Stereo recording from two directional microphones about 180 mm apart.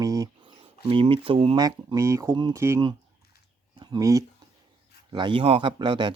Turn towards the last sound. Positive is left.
turn(degrees=-25)  # may be behind; listen again after turning